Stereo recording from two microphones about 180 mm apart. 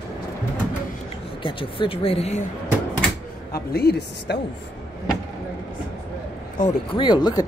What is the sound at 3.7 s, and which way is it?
Speech, 60° left (ahead or behind).